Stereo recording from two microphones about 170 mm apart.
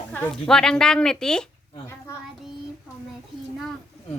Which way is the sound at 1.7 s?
15° left (ahead or behind).